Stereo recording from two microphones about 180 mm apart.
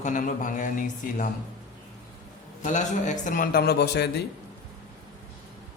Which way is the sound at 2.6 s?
40° left (ahead or behind).